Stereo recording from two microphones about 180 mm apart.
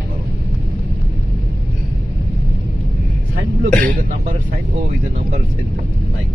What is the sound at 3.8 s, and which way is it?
Speech, 50° right (ahead or behind).